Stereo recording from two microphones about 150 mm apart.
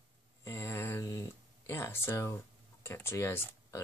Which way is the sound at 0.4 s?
15° left (ahead or behind).